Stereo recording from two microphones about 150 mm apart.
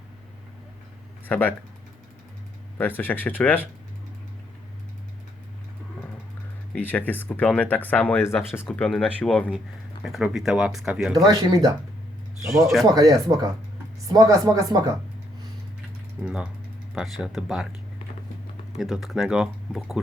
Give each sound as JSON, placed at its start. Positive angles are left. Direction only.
{"t": 1.3, "sound": "speech", "side_deg": 10}
{"t": 2.7, "sound": "speech", "side_deg": 10}
{"t": 6.7, "sound": "speech", "side_deg": 10}
{"t": 9.1, "sound": "speech", "side_deg": 10}
{"t": 10.0, "sound": "speech", "side_deg": -5}
{"t": 11.1, "sound": "speech", "side_deg": -25}
{"t": 16.2, "sound": "speech", "side_deg": -5}
{"t": 18.8, "sound": "speech", "side_deg": 0}